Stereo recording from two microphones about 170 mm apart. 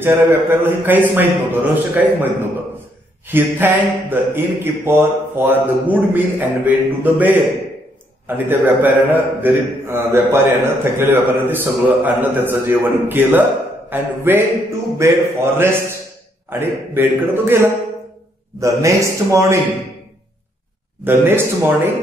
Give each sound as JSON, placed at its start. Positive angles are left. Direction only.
{"t": 0.0, "sound": "a man's voice", "side_deg": -15}
{"t": 3.3, "sound": "a man's voice", "side_deg": -10}
{"t": 21.0, "sound": "a man's voice", "side_deg": -15}